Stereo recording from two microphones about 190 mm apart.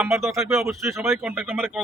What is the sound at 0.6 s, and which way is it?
Speech, 15° right (ahead or behind).